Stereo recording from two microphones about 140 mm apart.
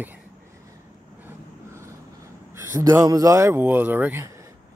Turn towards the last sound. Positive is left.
turn(degrees=-25)  # may be behind; listen again after turning